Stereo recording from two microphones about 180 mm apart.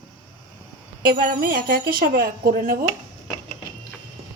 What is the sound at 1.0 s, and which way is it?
A woman's voice, 50° right (ahead or behind).